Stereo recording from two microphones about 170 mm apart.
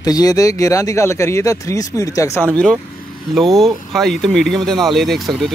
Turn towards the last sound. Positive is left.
turn(degrees=0)  # may be behind; listen again after turning